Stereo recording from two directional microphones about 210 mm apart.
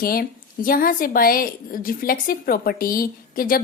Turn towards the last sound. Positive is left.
turn(degrees=45)  # may be behind; listen again after turning